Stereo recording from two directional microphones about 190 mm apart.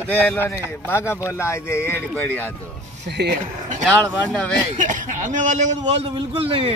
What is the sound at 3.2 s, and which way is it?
Speech, 60° right (ahead or behind).